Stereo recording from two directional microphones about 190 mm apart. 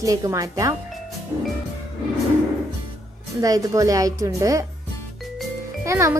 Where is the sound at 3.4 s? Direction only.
15° right (ahead or behind).